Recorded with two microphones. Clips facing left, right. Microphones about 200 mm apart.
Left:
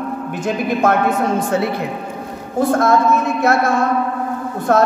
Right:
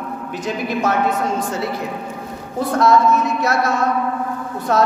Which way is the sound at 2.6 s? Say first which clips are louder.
Left 1 dB; 50° left (ahead or behind).